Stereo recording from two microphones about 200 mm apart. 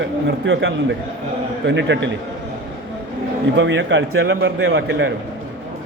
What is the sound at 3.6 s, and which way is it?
A man's voice, 65° right (ahead or behind).